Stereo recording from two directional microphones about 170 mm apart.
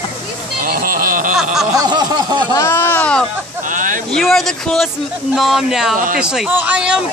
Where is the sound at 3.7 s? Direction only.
50° right (ahead or behind).